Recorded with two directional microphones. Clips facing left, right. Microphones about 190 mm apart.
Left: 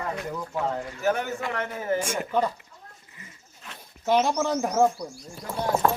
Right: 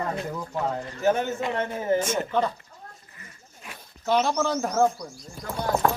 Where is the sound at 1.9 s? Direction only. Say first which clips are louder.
Right 1 dB; 10° left (ahead or behind).